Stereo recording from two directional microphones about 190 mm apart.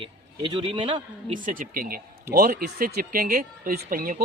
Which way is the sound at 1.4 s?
45° right (ahead or behind).